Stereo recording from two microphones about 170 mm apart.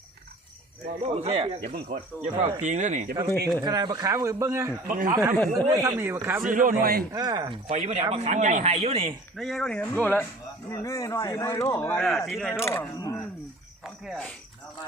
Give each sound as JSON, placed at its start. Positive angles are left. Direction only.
{"t": 1.0, "sound": "speech", "side_deg": -35}
{"t": 3.6, "sound": "a man's voice", "side_deg": -25}
{"t": 4.9, "sound": "a man's voice", "side_deg": -55}
{"t": 5.6, "sound": "a man's voice", "side_deg": -15}
{"t": 6.4, "sound": "a man's voice", "side_deg": -50}
{"t": 7.1, "sound": "a man's voice", "side_deg": -20}
{"t": 7.7, "sound": "speech", "side_deg": -40}
{"t": 9.3, "sound": "speech", "side_deg": 0}
{"t": 12.0, "sound": "speech", "side_deg": 0}
{"t": 12.6, "sound": "speech", "side_deg": 15}
{"t": 13.8, "sound": "speech", "side_deg": -5}